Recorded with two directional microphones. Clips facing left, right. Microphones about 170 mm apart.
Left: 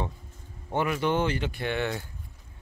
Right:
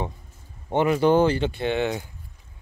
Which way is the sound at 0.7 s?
25° right (ahead or behind).